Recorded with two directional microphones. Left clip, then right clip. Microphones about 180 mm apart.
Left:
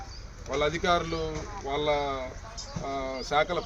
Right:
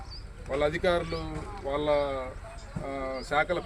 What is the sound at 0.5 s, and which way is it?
Speech, 10° right (ahead or behind).